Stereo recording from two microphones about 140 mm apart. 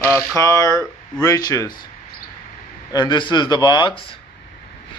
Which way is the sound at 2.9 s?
30° left (ahead or behind).